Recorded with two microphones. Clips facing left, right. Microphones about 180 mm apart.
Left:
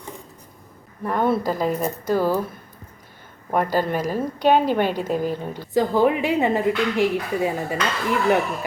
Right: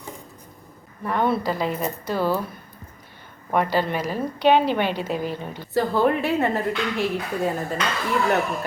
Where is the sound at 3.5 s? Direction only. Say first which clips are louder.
Left 1 dB; 45° left (ahead or behind).